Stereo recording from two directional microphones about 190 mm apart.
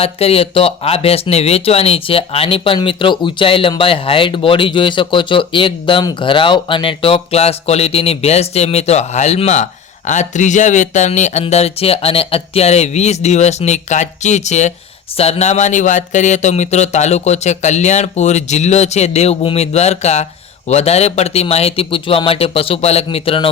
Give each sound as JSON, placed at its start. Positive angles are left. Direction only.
{"t": 0.0, "sound": "speech", "side_deg": 30}